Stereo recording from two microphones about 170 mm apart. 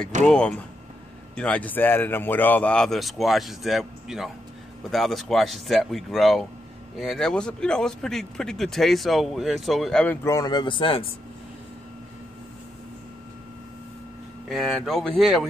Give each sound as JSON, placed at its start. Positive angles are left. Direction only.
{"t": 0.2, "sound": "a man's voice", "side_deg": 5}
{"t": 10.2, "sound": "speech", "side_deg": 20}
{"t": 14.5, "sound": "a man's voice", "side_deg": 0}